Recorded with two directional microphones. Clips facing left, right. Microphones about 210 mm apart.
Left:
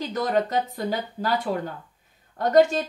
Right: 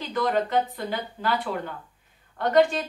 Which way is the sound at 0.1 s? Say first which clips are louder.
Right 1 dB; 40° left (ahead or behind).